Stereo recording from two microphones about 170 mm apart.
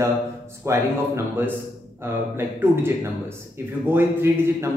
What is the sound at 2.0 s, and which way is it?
Speech, 15° right (ahead or behind).